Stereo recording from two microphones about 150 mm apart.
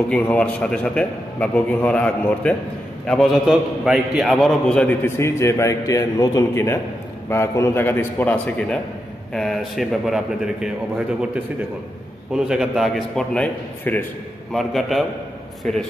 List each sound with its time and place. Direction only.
0.1 s a man's voice: 10° left (ahead or behind)
12.3 s a man's voice: 5° right (ahead or behind)